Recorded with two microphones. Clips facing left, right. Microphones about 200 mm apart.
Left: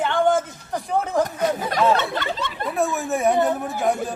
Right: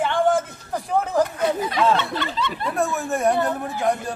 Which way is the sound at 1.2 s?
45° left (ahead or behind).